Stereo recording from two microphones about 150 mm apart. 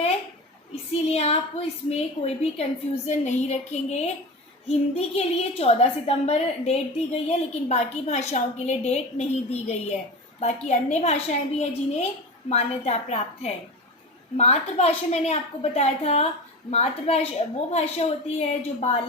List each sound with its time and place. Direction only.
1.0 s a woman's voice: 45° left (ahead or behind)